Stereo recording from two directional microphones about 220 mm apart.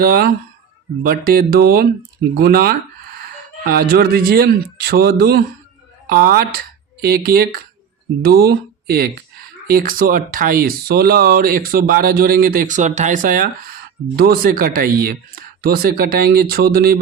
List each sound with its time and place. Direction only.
0.0 s speech: 45° right (ahead or behind)